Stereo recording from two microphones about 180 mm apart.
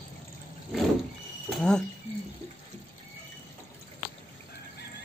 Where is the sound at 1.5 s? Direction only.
5° left (ahead or behind).